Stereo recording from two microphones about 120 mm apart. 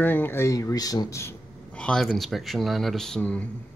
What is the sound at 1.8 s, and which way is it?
Speech, 5° left (ahead or behind).